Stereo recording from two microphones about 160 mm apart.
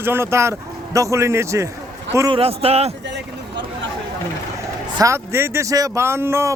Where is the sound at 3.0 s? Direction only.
90° right.